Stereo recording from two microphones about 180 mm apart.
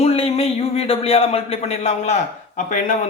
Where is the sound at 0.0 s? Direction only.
35° left (ahead or behind).